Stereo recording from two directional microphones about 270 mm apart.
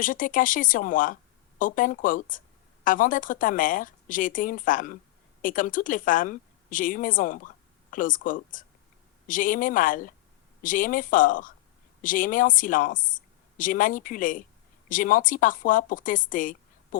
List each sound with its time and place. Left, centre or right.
0.0 s a woman's voice: left